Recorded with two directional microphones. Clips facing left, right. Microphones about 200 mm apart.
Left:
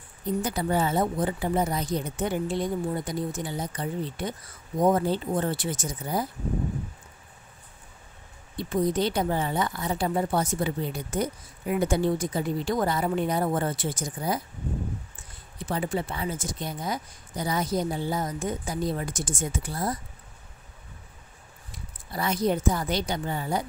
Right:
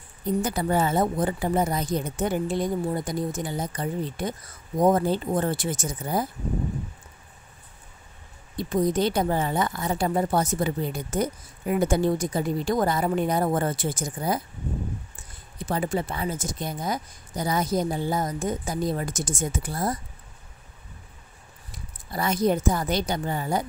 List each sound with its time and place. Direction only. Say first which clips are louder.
0.4 s speech: right 2 dB; 50° right (ahead or behind)
8.5 s speech: right 2 dB; 45° right (ahead or behind)
15.6 s speech: right 2 dB; 40° right (ahead or behind)
22.1 s speech: right 2 dB; 45° right (ahead or behind)